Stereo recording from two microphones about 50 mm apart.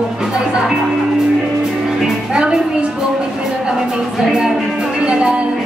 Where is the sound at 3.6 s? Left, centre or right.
Centre.